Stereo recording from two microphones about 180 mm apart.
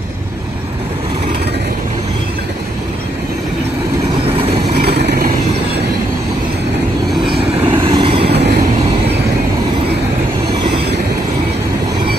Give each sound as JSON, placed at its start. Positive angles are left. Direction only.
{"t": 4.8, "sound": "vehicle", "side_deg": -65}
{"t": 7.6, "sound": "vehicle", "side_deg": -30}
{"t": 8.3, "sound": "train", "side_deg": -65}